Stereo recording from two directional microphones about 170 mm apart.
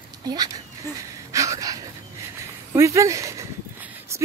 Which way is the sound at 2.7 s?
15° right (ahead or behind).